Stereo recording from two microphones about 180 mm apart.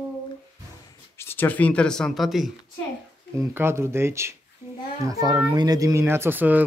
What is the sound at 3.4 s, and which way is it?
Speech, 15° right (ahead or behind).